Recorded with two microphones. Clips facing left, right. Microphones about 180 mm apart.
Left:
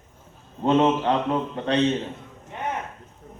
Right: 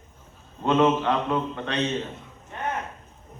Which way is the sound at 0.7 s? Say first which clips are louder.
Left 1 dB; 30° left (ahead or behind).